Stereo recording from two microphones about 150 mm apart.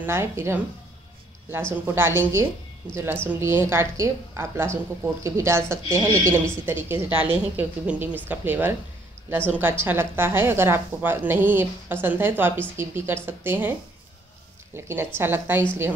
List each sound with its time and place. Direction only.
0.0 s a woman's voice: 15° right (ahead or behind)
1.7 s a woman's voice: 15° right (ahead or behind)
15.1 s a woman's voice: 15° right (ahead or behind)